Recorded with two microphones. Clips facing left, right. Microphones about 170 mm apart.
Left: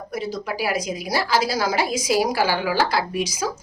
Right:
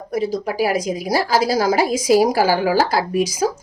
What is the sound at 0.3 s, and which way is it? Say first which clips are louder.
A woman's voice: right 4 dB; 45° right (ahead or behind).